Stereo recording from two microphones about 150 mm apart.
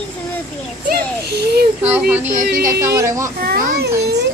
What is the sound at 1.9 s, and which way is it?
Speech, 10° right (ahead or behind).